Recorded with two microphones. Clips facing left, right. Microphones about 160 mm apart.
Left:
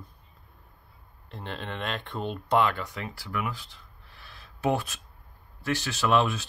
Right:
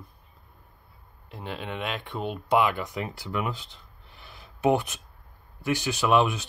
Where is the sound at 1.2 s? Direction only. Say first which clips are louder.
Right 2 dB; 5° right (ahead or behind); by 3.7 s 20° right (ahead or behind).